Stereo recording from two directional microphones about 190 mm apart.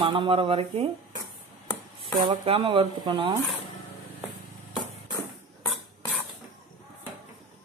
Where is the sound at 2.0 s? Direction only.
30° right (ahead or behind).